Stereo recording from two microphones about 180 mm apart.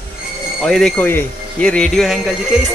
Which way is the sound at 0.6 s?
5° left (ahead or behind).